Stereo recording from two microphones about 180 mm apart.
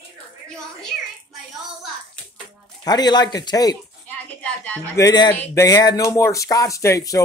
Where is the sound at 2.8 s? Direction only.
25° left (ahead or behind).